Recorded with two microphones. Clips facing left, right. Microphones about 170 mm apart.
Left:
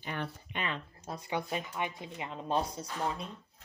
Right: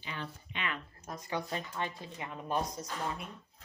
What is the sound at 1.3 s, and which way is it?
Speech, 15° left (ahead or behind).